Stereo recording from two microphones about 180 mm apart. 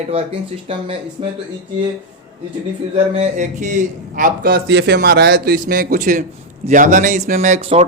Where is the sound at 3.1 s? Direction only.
40° right (ahead or behind).